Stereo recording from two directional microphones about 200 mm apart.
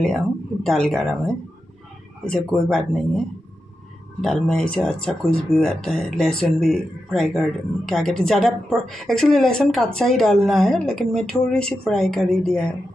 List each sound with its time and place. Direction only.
0.7 s speech: centre (ahead or behind)
4.2 s speech: centre (ahead or behind)